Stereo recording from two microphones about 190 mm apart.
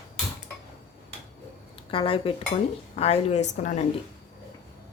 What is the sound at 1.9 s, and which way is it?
A woman's voice, 30° left (ahead or behind).